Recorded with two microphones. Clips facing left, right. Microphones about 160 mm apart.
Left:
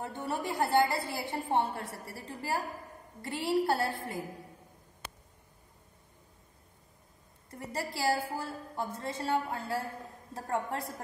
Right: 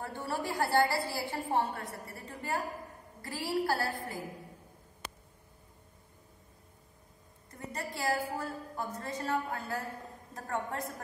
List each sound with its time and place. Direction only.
0.0 s a woman's voice: 20° left (ahead or behind)
7.5 s a woman's voice: 30° left (ahead or behind)